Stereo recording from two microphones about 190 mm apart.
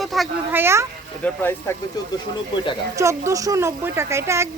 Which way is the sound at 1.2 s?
10° left (ahead or behind).